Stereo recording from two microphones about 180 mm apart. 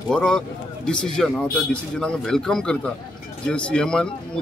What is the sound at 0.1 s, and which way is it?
Speech, 5° left (ahead or behind).